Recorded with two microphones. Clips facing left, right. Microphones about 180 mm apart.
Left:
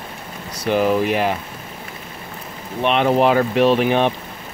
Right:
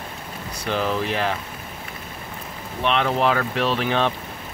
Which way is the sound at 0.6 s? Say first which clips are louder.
Left 7 dB; 15° left (ahead or behind).